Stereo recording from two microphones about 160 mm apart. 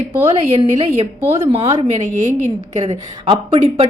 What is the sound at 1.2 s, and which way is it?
Speech, 15° right (ahead or behind).